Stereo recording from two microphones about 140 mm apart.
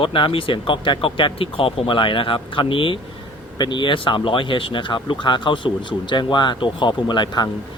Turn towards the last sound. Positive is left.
turn(degrees=30)  # may be behind; listen again after turning